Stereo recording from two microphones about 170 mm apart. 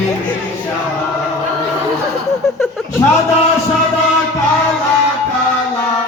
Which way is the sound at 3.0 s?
20° left (ahead or behind).